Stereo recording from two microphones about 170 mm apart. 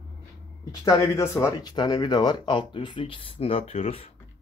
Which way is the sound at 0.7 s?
15° left (ahead or behind).